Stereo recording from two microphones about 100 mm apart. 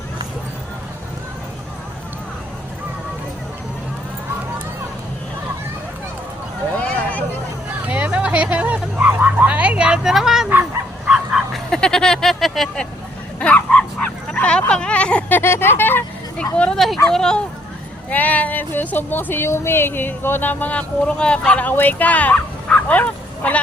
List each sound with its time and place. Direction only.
7.9 s a sound: 15° right (ahead or behind)
11.1 s bow-wow: centre (ahead or behind)
14.7 s speech: 10° left (ahead or behind)
15.4 s speech: 20° left (ahead or behind)